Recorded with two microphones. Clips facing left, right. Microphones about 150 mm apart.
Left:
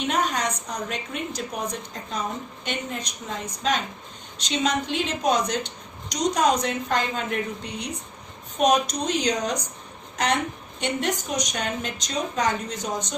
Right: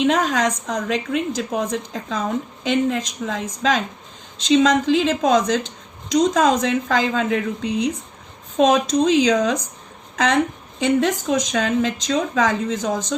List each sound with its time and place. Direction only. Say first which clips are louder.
0.0 s speech: right 7 dB; 90° right